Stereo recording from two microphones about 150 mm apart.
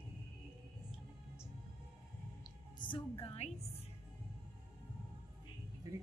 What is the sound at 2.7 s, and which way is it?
Music, 35° left (ahead or behind).